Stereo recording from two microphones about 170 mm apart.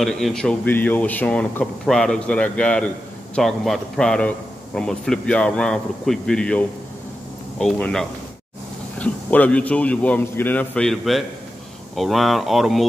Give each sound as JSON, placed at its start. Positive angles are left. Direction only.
{"t": 0.0, "sound": "a man's voice", "side_deg": 0}